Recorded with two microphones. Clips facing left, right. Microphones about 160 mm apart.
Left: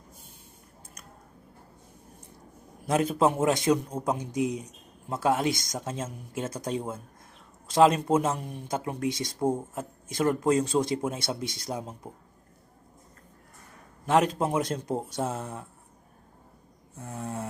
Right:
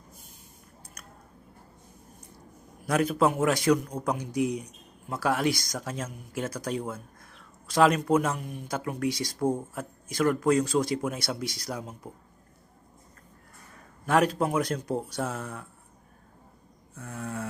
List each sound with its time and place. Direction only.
2.8 s speech: 25° left (ahead or behind)
14.0 s speech: 25° left (ahead or behind)
17.0 s speech: 25° left (ahead or behind)